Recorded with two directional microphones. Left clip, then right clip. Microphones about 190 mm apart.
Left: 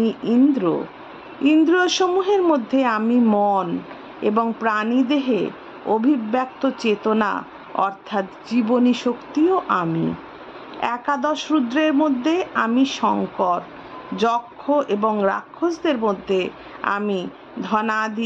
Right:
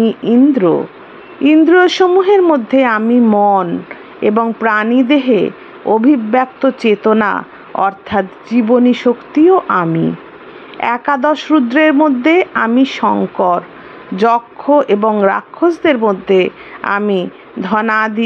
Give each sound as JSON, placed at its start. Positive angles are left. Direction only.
{"t": 0.0, "sound": "a woman's voice", "side_deg": -20}